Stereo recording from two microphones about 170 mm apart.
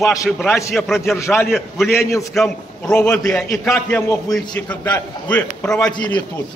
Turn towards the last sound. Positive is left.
turn(degrees=5)  # may be behind; listen again after turning